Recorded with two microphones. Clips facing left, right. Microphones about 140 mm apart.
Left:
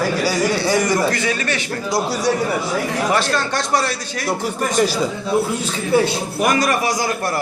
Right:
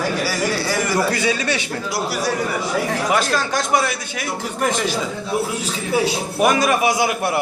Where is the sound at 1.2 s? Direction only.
10° right (ahead or behind).